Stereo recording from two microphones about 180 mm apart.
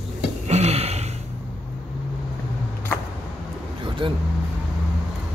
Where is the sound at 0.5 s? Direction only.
35° right (ahead or behind).